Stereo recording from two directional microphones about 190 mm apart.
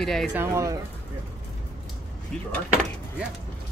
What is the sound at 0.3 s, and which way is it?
Speech, 15° right (ahead or behind).